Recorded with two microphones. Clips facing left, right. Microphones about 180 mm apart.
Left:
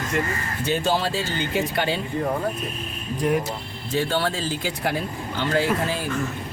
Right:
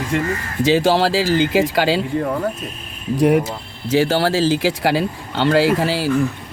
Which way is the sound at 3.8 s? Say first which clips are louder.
Right 7 dB; 90° right.